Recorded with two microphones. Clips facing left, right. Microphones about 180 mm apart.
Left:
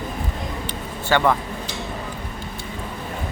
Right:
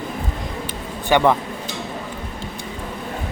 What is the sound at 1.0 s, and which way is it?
Speech, 15° right (ahead or behind).